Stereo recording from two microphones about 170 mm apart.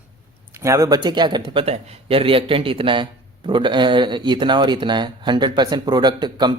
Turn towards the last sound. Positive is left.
turn(degrees=-25)  # may be behind; listen again after turning